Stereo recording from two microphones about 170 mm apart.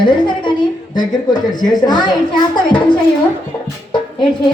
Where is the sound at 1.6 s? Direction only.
25° left (ahead or behind).